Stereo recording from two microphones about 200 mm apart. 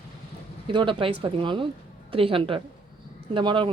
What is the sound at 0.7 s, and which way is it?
Speech, 25° right (ahead or behind).